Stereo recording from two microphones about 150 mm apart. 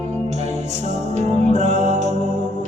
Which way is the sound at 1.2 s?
50° right (ahead or behind).